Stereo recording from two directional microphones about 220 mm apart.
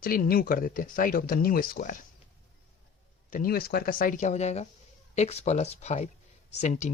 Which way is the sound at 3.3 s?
40° left (ahead or behind).